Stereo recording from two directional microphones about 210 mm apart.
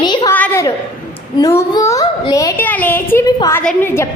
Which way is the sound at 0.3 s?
10° left (ahead or behind).